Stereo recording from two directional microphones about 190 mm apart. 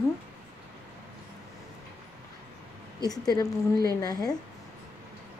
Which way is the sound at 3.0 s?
20° left (ahead or behind).